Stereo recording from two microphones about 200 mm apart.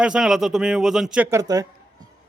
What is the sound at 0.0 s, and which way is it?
Speech, 5° right (ahead or behind).